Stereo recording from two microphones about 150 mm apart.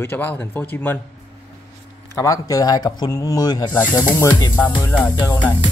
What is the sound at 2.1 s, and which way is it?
Speech, 20° left (ahead or behind).